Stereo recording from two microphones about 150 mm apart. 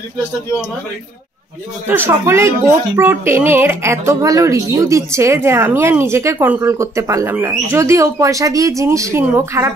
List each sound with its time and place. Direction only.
1.9 s speech: 15° right (ahead or behind)